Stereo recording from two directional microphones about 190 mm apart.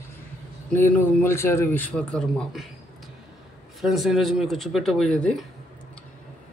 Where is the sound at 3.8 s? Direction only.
Centre (ahead or behind).